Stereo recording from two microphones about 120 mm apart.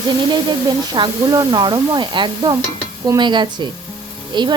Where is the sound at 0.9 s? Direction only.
35° right (ahead or behind).